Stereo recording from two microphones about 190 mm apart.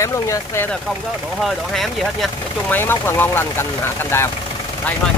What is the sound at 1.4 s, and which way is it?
Speech, centre (ahead or behind).